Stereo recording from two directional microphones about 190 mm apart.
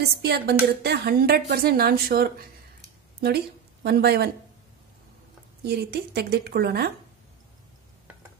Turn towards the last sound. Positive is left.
turn(degrees=-55)  # may be behind; listen again after turning